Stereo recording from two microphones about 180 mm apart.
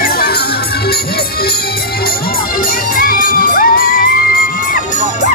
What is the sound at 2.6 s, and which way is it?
Children shouting, 50° left (ahead or behind).